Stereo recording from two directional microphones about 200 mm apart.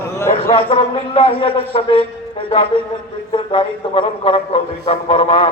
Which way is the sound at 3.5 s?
25° left (ahead or behind).